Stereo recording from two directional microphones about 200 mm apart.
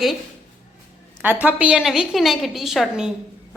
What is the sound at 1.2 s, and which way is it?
A woman's voice, 5° right (ahead or behind).